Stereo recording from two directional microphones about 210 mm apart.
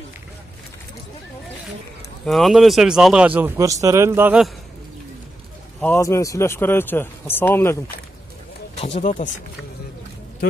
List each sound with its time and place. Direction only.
2.2 s a man's voice: centre (ahead or behind)
5.8 s speech: 10° left (ahead or behind)
8.7 s speech: 30° left (ahead or behind)